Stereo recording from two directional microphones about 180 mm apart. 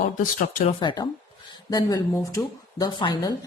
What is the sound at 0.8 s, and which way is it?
Speech, 25° left (ahead or behind).